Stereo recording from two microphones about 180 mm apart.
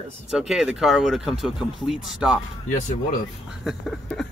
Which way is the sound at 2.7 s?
45° left (ahead or behind).